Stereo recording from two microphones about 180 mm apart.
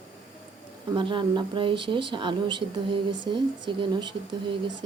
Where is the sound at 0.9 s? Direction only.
25° right (ahead or behind).